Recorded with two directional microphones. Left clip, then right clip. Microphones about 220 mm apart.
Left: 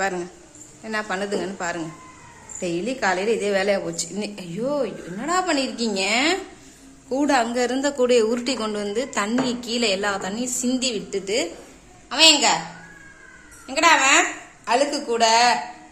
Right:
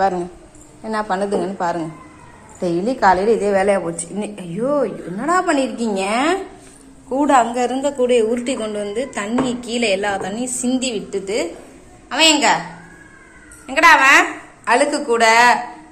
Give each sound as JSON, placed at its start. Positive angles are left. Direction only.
{"t": 0.0, "sound": "a woman's voice", "side_deg": 5}
{"t": 3.4, "sound": "a woman's voice", "side_deg": 20}
{"t": 4.6, "sound": "a woman's voice", "side_deg": 0}
{"t": 12.0, "sound": "a woman's voice", "side_deg": 10}
{"t": 13.7, "sound": "a woman's voice", "side_deg": 10}